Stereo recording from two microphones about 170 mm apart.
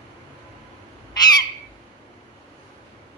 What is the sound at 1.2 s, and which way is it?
Bird, 25° left (ahead or behind).